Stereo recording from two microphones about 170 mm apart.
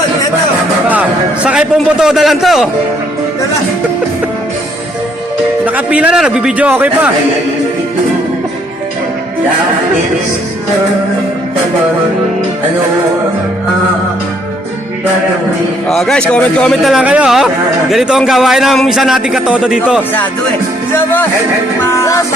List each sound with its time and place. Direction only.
0.9 s a man's voice: 10° right (ahead or behind)
5.6 s a man's voice: 10° right (ahead or behind)
15.9 s speech: centre (ahead or behind)
20.9 s speech: 10° left (ahead or behind)
21.8 s music: 15° left (ahead or behind)